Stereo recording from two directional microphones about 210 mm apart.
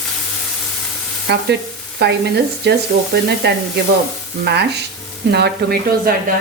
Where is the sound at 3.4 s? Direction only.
50° right (ahead or behind).